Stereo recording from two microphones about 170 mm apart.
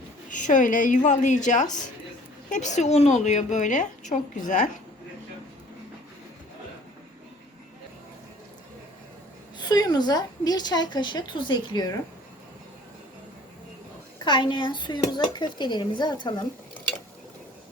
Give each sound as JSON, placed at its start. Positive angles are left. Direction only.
{"t": 0.3, "sound": "a woman's voice", "side_deg": 50}
{"t": 9.6, "sound": "a woman's voice", "side_deg": 25}
{"t": 14.3, "sound": "a woman's voice", "side_deg": 25}